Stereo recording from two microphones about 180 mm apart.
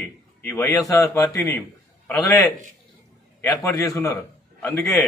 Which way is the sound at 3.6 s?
20° left (ahead or behind).